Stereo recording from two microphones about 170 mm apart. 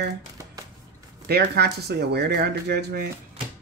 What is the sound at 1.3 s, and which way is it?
Speech, 75° right (ahead or behind).